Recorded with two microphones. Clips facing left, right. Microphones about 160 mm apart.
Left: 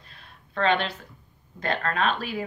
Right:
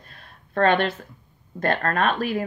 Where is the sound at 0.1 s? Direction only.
50° right (ahead or behind).